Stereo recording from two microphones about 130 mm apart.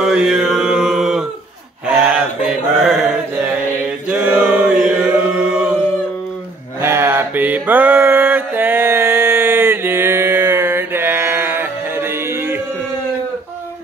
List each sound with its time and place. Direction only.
0.0 s mantra: 5° right (ahead or behind)
4.1 s chant: 10° right (ahead or behind)
6.8 s mantra: 20° right (ahead or behind)